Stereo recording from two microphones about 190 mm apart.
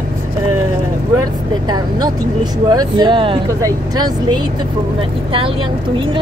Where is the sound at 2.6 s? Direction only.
25° right (ahead or behind).